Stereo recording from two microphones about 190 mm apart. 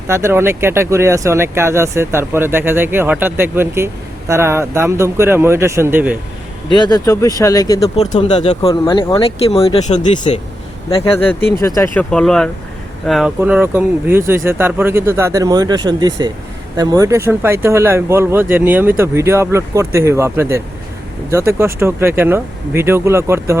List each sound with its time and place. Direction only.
0.1 s speech: 15° right (ahead or behind)
6.7 s speech: 20° left (ahead or behind)
8.1 s speech: 35° left (ahead or behind)
8.7 s speech: 25° left (ahead or behind)
11.6 s speech: 15° left (ahead or behind)
12.1 s speech: 5° left (ahead or behind); by 23.6 s 15° right (ahead or behind)